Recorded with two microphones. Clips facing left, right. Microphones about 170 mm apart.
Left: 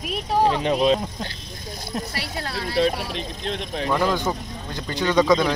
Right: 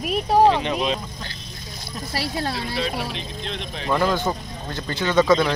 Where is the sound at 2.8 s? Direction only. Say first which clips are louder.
Left 9 dB; 45° left (ahead or behind).